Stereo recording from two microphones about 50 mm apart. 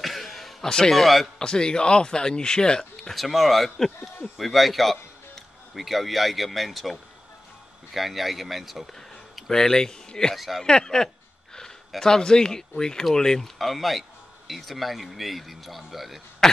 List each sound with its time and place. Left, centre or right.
0.0 s a sound: centre
0.7 s speech: centre
1.4 s speech: centre
3.0 s speech: centre
9.5 s speech: centre
10.3 s speech: centre
10.6 s speech: centre
13.6 s speech: centre
16.4 s cough: centre